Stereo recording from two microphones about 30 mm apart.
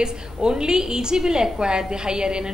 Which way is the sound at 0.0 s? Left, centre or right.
Right.